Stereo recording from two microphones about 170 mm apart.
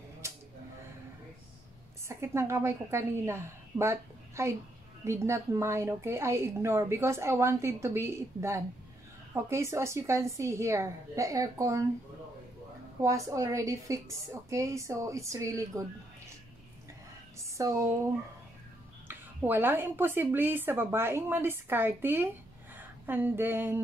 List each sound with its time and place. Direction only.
2.0 s a woman's voice: 15° right (ahead or behind)
13.0 s a woman's voice: 20° right (ahead or behind)
17.4 s a woman's voice: 20° right (ahead or behind)